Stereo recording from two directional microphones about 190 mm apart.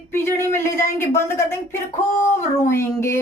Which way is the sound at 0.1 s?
15° left (ahead or behind).